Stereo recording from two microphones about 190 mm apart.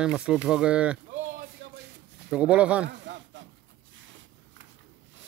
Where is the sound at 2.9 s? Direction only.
70° right (ahead or behind).